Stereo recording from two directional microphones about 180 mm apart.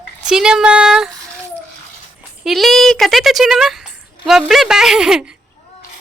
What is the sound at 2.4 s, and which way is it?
Speech, centre (ahead or behind).